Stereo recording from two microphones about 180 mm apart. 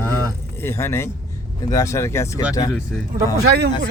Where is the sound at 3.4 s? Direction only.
60° right (ahead or behind).